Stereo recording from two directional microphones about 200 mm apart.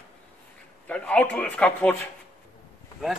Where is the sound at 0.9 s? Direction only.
5° left (ahead or behind).